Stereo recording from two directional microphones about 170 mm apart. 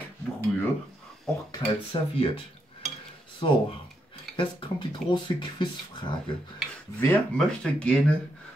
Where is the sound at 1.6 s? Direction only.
25° left (ahead or behind).